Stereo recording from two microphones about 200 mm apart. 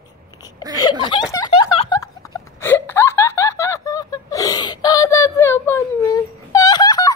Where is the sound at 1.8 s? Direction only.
20° left (ahead or behind).